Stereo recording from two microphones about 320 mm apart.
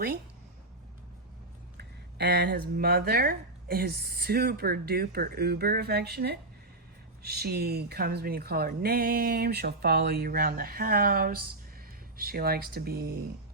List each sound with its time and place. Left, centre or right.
1.8 s speech: right